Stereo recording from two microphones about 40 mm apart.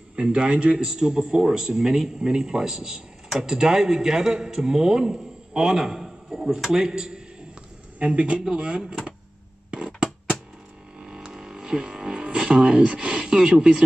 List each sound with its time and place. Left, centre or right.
0.1 s a man's voice: right
8.0 s a man's voice: right
8.5 s a man's voice: right
9.7 s a sound: right
11.0 s a sound: right
13.4 s a man's voice: centre